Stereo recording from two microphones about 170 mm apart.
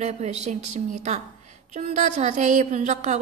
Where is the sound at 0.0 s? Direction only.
40° right (ahead or behind).